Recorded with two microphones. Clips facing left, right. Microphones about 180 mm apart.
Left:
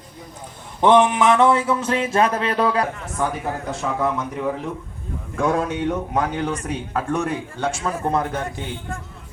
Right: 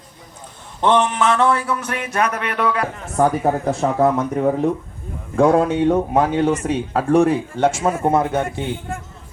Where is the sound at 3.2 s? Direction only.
40° right (ahead or behind).